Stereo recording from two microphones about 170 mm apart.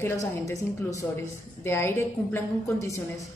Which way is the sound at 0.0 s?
15° left (ahead or behind).